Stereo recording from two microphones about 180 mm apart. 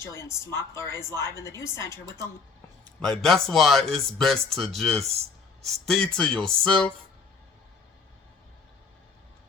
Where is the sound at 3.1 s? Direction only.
Centre (ahead or behind).